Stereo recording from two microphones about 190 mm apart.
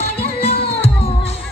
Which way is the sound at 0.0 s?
35° left (ahead or behind).